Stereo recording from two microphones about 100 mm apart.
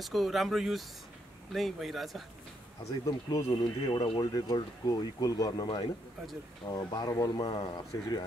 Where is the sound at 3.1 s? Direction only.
35° left (ahead or behind).